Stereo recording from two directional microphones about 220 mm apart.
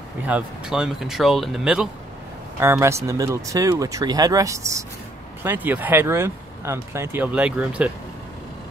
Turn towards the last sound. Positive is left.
turn(degrees=-5)  # may be behind; listen again after turning